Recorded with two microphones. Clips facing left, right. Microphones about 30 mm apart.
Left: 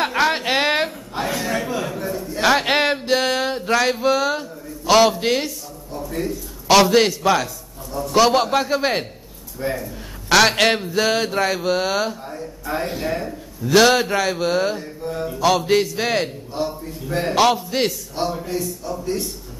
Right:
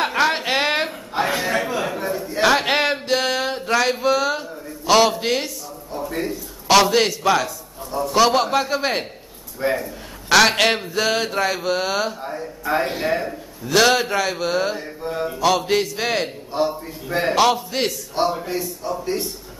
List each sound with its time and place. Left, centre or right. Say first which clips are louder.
0.0 s a sound: even; centre
0.8 s a sound: right 3 dB; centre
2.4 s a sound: even; centre
5.9 s a man's voice: even; centre
6.7 s mantra: left 1 dB; centre
9.6 s speech: right 3 dB; right
10.3 s mantra: even; centre
12.2 s speech: right 3 dB; centre
13.7 s mantra: left 2 dB; centre
14.8 s a man's voice: right 1 dB; centre
15.3 s mantra: left 2 dB; centre
16.5 s a man's voice: right 4 dB; centre
17.4 s mantra: left 2 dB; centre
18.1 s a man's voice: right 2 dB; centre